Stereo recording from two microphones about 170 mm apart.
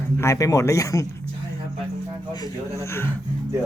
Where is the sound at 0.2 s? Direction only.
20° left (ahead or behind).